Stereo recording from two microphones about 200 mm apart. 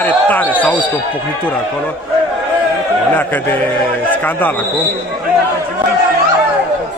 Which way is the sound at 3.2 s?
10° left (ahead or behind).